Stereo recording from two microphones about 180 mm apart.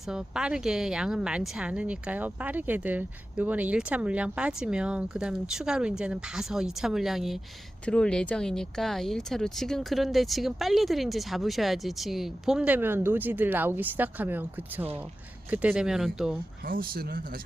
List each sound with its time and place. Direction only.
0.1 s speech: 5° right (ahead or behind)
16.6 s speech: 55° right (ahead or behind)